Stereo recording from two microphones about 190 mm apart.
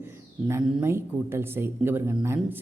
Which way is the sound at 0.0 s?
10° right (ahead or behind).